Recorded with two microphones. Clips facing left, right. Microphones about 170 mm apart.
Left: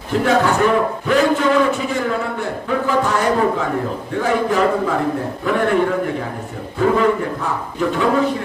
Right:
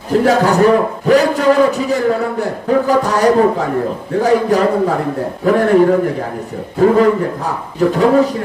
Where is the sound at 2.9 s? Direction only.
40° right (ahead or behind).